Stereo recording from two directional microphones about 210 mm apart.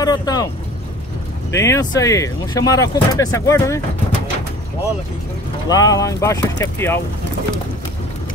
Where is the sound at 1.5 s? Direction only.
15° left (ahead or behind).